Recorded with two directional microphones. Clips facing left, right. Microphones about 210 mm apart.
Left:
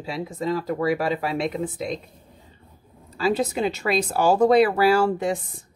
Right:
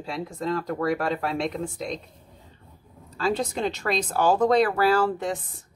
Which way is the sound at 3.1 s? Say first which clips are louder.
Left 3 dB; 5° left (ahead or behind).